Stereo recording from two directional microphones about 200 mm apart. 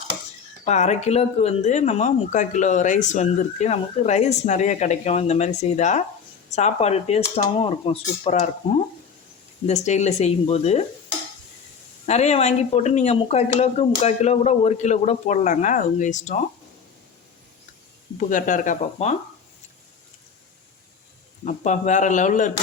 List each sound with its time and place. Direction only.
0.6 s speech: 35° left (ahead or behind)
9.6 s speech: 35° left (ahead or behind)
12.0 s speech: 35° left (ahead or behind)
18.2 s speech: 40° left (ahead or behind)
21.4 s speech: 35° left (ahead or behind)